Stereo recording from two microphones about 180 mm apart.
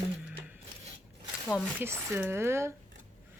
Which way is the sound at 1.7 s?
15° right (ahead or behind).